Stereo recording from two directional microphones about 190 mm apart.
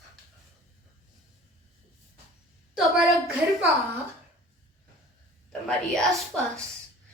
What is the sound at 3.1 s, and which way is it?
Speech, centre (ahead or behind).